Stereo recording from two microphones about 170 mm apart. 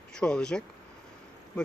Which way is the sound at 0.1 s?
5° left (ahead or behind).